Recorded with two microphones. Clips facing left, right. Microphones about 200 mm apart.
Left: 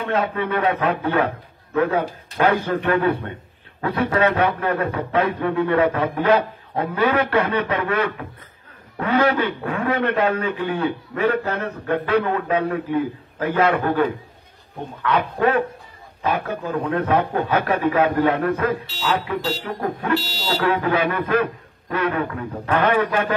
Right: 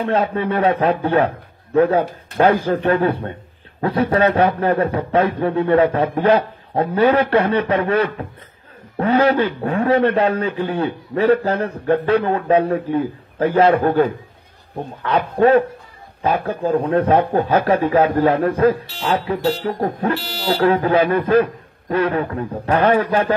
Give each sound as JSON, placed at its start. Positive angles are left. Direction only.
{"t": 0.0, "sound": "a man's voice", "side_deg": -30}
{"t": 20.2, "sound": "speech", "side_deg": -55}
{"t": 20.6, "sound": "a man's voice", "side_deg": -30}